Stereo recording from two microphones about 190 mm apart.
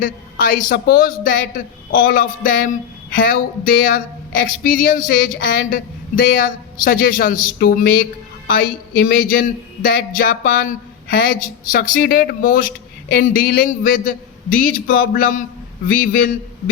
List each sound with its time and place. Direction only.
0.0 s speech: 45° left (ahead or behind)